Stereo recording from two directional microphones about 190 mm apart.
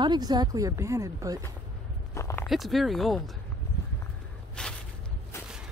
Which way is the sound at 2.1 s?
15° left (ahead or behind).